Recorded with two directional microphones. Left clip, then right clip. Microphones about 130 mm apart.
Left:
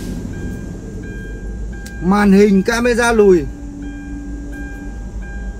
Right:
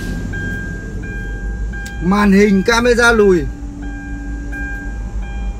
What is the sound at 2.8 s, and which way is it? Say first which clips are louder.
Speech: right 1 dB; 40° right (ahead or behind).